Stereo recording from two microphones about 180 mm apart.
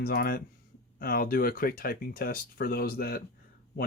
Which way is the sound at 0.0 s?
55° left (ahead or behind).